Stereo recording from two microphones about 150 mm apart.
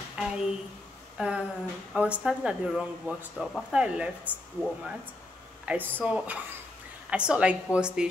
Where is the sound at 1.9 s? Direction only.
10° right (ahead or behind).